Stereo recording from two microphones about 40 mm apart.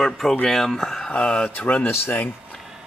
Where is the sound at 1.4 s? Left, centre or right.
Left.